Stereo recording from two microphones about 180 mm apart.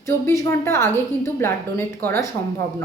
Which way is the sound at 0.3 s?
15° left (ahead or behind).